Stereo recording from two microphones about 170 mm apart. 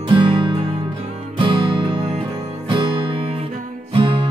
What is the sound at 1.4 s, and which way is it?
Music, 30° right (ahead or behind).